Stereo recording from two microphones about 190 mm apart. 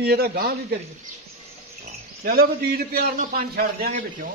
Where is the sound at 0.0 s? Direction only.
55° right (ahead or behind).